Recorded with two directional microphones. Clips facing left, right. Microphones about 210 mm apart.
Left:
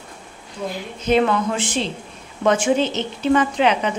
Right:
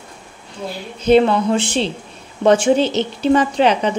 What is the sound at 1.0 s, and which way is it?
Speech, 30° right (ahead or behind).